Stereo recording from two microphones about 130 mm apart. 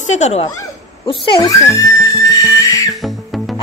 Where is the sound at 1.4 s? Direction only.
25° left (ahead or behind).